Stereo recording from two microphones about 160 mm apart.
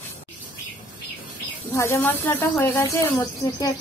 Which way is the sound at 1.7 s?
20° left (ahead or behind).